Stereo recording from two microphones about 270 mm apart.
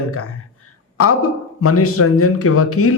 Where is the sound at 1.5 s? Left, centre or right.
Left.